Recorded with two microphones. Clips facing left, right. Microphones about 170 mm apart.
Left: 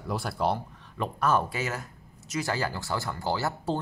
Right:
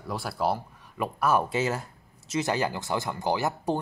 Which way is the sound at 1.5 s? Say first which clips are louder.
Right 5 dB; 30° right (ahead or behind).